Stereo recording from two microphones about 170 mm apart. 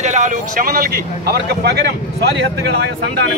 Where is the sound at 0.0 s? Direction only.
45° right (ahead or behind); by 1.8 s 70° right (ahead or behind).